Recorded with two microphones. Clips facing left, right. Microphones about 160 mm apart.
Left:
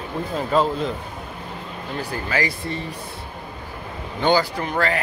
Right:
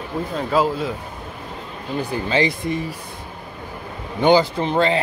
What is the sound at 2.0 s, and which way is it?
Speech, 20° right (ahead or behind).